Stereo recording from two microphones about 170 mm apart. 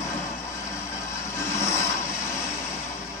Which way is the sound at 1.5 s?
15° left (ahead or behind).